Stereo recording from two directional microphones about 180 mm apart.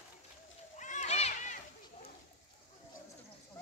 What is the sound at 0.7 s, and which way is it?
Children playing, 40° left (ahead or behind).